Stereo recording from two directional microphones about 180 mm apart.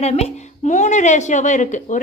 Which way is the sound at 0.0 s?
35° left (ahead or behind).